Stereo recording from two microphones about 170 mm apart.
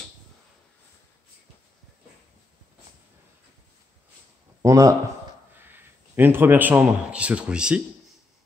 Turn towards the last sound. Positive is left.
turn(degrees=-5)  # may be behind; listen again after turning